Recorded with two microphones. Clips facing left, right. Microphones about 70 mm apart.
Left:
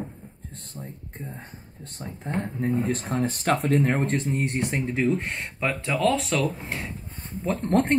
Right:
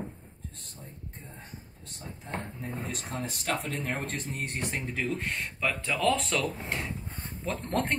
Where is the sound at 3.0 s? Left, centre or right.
Left.